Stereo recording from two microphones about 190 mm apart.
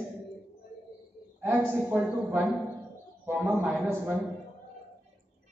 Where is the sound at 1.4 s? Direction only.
10° right (ahead or behind).